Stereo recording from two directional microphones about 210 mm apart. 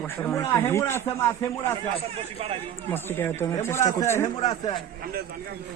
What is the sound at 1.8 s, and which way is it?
Speech, 30° right (ahead or behind).